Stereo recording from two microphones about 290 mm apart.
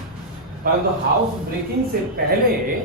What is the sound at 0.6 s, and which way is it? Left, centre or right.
Speech, right.